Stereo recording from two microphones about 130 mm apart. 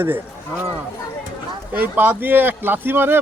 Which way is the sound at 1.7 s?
15° right (ahead or behind).